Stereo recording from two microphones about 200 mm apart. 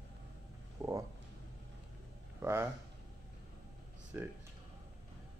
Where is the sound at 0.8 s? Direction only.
15° right (ahead or behind).